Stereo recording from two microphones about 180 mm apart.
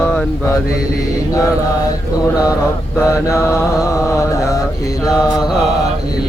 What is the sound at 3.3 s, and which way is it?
Mantra, 15° left (ahead or behind).